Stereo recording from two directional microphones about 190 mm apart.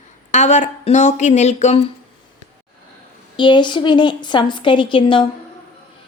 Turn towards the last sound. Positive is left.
turn(degrees=25)  # may be behind; listen again after turning